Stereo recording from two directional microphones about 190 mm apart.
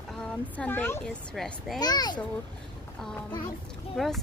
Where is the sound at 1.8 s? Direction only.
20° left (ahead or behind).